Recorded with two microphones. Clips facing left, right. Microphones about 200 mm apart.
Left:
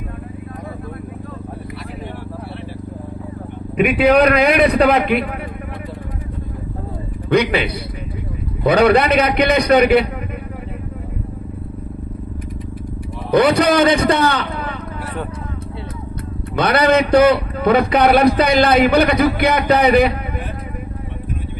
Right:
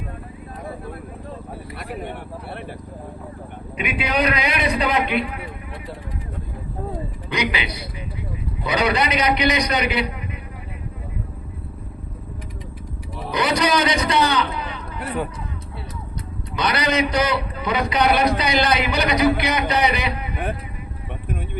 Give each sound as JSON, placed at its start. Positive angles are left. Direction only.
{"t": 3.8, "sound": "a man's voice", "side_deg": 55}
{"t": 7.3, "sound": "a man's voice", "side_deg": 55}
{"t": 13.3, "sound": "a man's voice", "side_deg": 55}
{"t": 16.6, "sound": "a man's voice", "side_deg": 55}